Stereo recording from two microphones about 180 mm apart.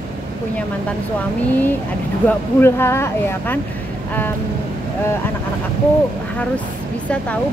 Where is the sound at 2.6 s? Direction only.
15° left (ahead or behind).